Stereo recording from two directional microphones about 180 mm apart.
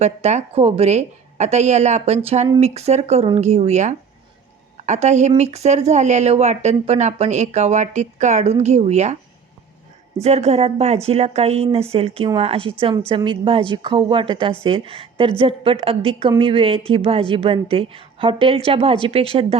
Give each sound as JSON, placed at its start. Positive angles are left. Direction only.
{"t": 0.0, "sound": "speech", "side_deg": -40}
{"t": 10.2, "sound": "a woman's voice", "side_deg": -35}